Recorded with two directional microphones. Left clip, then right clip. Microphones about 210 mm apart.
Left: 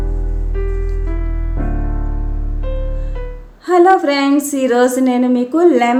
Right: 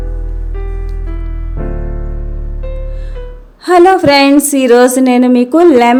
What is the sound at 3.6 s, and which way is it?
A woman's voice, 45° right (ahead or behind).